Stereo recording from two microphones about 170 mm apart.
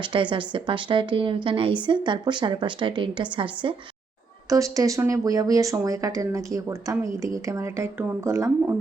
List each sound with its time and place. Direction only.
0.0 s speech: 30° right (ahead or behind)
4.4 s speech: 20° right (ahead or behind)